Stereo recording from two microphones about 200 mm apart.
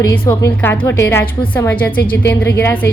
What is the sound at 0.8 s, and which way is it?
A woman's voice, 15° left (ahead or behind).